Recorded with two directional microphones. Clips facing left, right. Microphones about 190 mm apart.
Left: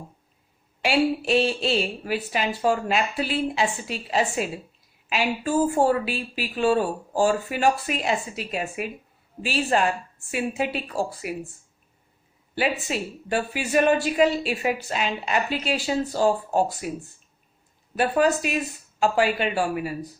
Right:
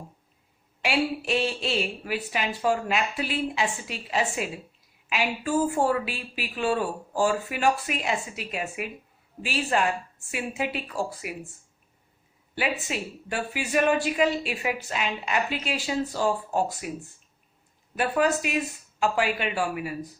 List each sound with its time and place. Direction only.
0.8 s a woman's voice: 30° left (ahead or behind)
12.5 s a woman's voice: 35° left (ahead or behind)
17.9 s a woman's voice: 35° left (ahead or behind)